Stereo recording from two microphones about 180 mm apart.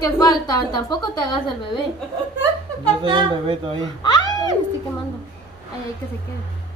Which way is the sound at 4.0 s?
25° left (ahead or behind).